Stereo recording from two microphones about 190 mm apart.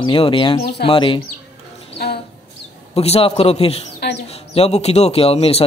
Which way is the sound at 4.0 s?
60° left (ahead or behind).